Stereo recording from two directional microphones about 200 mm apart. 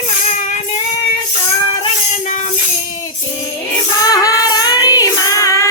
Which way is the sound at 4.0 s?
15° left (ahead or behind).